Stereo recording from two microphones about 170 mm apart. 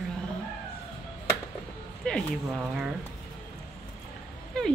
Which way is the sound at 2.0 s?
5° left (ahead or behind).